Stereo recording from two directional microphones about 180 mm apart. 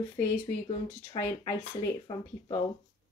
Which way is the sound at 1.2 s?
15° left (ahead or behind).